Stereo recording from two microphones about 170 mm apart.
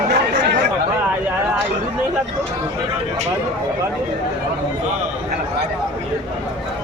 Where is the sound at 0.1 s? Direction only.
85° right.